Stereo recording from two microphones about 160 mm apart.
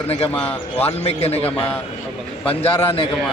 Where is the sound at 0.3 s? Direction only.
10° left (ahead or behind).